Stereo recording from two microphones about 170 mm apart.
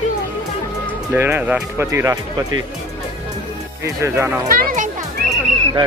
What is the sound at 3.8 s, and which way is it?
Speech, 15° right (ahead or behind).